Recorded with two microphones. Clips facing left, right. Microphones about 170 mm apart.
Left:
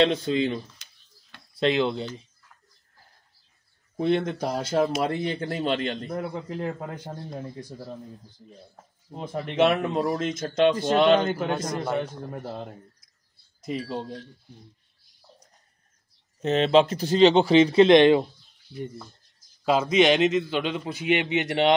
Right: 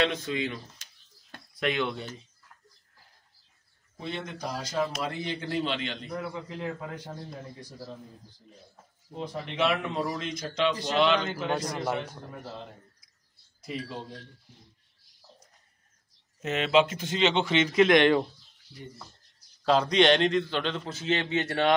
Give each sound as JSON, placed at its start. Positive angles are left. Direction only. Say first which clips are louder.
{"t": 0.0, "sound": "speech", "louder": "left 6 dB", "side_deg": 30}
{"t": 1.6, "sound": "speech", "louder": "left 6 dB", "side_deg": 30}
{"t": 3.9, "sound": "a man's voice", "louder": "left 13 dB", "side_deg": 60}
{"t": 9.1, "sound": "a man's voice", "louder": "left 5 dB", "side_deg": 50}
{"t": 11.7, "sound": "a man's voice", "louder": "left 3 dB", "side_deg": -5}
{"t": 12.4, "sound": "a man's voice", "louder": "left 5 dB", "side_deg": 50}
{"t": 16.3, "sound": "speech", "louder": "left 4 dB", "side_deg": 35}
{"t": 19.6, "sound": "a man's voice", "louder": "left 2 dB", "side_deg": 5}